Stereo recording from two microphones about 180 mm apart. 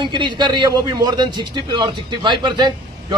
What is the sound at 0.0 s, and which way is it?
A man's voice, 25° right (ahead or behind).